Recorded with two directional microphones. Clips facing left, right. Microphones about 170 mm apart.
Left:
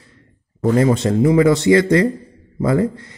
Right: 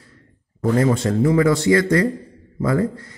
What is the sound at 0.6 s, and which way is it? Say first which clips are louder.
A man's voice: left 3 dB; 20° left (ahead or behind).